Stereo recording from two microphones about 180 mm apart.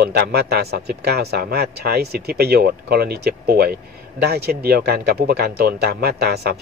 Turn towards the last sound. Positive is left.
turn(degrees=-60)  # may be behind; listen again after turning